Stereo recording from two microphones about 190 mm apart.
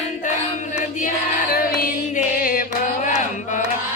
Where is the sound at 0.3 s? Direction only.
40° left (ahead or behind).